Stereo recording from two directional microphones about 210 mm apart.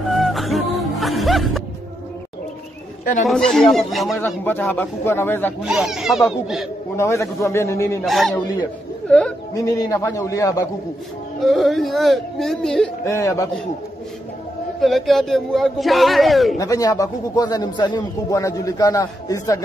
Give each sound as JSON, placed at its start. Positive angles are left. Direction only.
{"t": 0.1, "sound": "music", "side_deg": 0}
{"t": 3.3, "sound": "a man's voice", "side_deg": 0}
{"t": 4.2, "sound": "a man's voice", "side_deg": 10}
{"t": 5.6, "sound": "a man's voice", "side_deg": 0}
{"t": 7.0, "sound": "a man's voice", "side_deg": 15}
{"t": 8.0, "sound": "a man's voice", "side_deg": 0}
{"t": 9.5, "sound": "a man's voice", "side_deg": 15}
{"t": 11.4, "sound": "a man's voice", "side_deg": 0}
{"t": 13.0, "sound": "a man's voice", "side_deg": 15}
{"t": 14.8, "sound": "a man's voice", "side_deg": 0}
{"t": 16.5, "sound": "a man's voice", "side_deg": 15}